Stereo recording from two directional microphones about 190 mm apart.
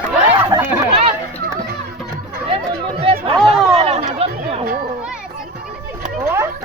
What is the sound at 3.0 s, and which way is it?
Chatter, 30° right (ahead or behind).